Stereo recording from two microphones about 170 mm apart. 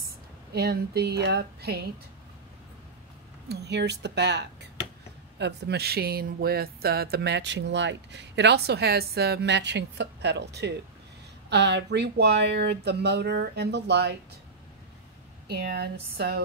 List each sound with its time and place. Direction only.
0.6 s speech: 65° right (ahead or behind)
3.4 s speech: 80° right
5.4 s speech: 75° right (ahead or behind)
15.4 s speech: 70° right (ahead or behind)